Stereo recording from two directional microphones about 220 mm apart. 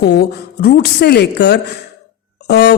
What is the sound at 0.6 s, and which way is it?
Speech, 45° left (ahead or behind).